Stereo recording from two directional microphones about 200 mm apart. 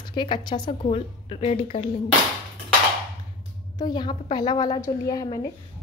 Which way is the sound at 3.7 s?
20° left (ahead or behind).